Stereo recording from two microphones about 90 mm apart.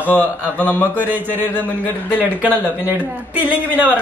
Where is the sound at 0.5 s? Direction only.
20° left (ahead or behind).